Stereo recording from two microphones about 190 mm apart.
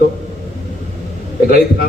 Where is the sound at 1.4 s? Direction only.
50° left (ahead or behind).